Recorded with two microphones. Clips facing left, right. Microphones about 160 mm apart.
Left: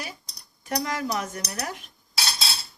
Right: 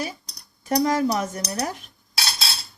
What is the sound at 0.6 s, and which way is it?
Speech, 30° right (ahead or behind).